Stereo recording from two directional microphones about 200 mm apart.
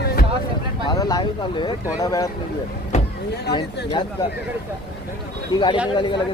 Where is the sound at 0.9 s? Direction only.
20° left (ahead or behind).